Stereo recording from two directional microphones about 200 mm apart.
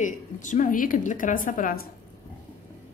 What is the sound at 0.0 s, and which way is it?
A woman's voice, 40° left (ahead or behind).